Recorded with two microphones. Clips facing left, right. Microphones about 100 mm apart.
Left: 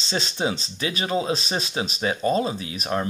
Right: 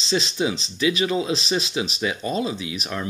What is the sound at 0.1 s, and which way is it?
Speech, 35° left (ahead or behind).